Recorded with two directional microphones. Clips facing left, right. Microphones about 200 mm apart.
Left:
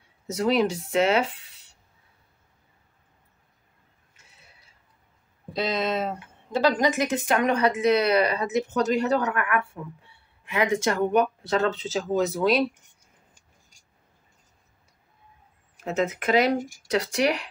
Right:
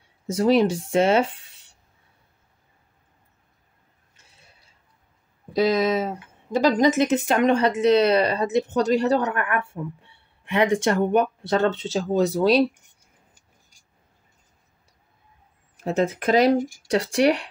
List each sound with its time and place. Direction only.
0.3 s speech: 30° right (ahead or behind)
5.6 s speech: 5° right (ahead or behind)
7.0 s speech: 25° right (ahead or behind)
15.8 s speech: 35° right (ahead or behind)